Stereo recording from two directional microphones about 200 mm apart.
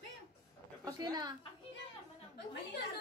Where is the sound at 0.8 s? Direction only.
20° right (ahead or behind).